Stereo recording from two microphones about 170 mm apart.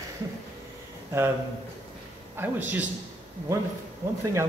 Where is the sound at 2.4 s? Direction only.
10° right (ahead or behind).